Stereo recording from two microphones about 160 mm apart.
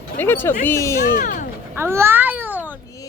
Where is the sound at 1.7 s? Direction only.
15° right (ahead or behind).